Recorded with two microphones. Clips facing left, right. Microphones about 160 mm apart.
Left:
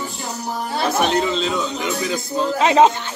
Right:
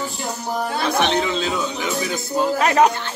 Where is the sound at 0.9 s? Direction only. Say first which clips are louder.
Left 1 dB; centre (ahead or behind).